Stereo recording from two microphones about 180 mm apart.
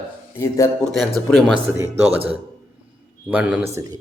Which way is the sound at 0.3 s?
15° left (ahead or behind).